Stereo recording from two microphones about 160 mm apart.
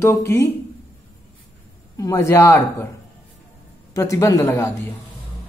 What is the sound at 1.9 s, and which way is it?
Speech, 20° left (ahead or behind).